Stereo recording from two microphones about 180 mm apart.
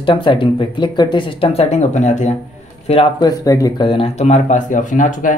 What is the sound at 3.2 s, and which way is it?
Speech, 20° left (ahead or behind).